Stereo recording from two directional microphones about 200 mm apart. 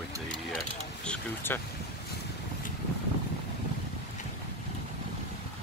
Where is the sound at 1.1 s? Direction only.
10° left (ahead or behind).